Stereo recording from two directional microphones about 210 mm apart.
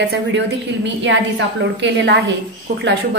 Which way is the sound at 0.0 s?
55° right (ahead or behind).